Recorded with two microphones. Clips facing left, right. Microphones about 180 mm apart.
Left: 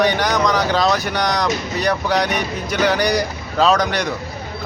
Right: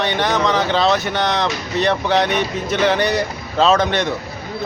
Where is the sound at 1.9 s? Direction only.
Centre (ahead or behind).